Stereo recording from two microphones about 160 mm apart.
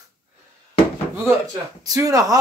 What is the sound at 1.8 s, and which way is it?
Speech, 20° right (ahead or behind).